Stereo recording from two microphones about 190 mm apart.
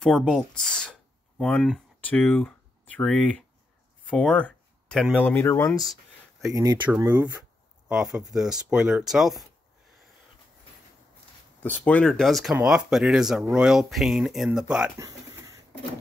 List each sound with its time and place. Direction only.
0.0 s speech: 5° left (ahead or behind)
4.1 s a sound: 5° left (ahead or behind)
5.1 s speech: 10° left (ahead or behind)
6.5 s speech: 20° right (ahead or behind); by 9.4 s centre (ahead or behind)
11.6 s speech: 10° left (ahead or behind)
15.0 s a sound: 15° right (ahead or behind)